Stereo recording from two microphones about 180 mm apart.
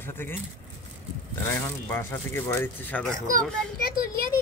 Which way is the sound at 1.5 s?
15° left (ahead or behind).